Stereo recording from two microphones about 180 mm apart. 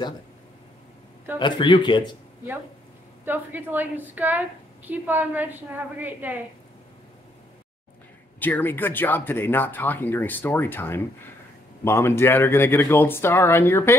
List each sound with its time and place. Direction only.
1.4 s speech: 25° left (ahead or behind)
3.3 s a woman's voice: 10° right (ahead or behind)
8.4 s speech: 10° left (ahead or behind)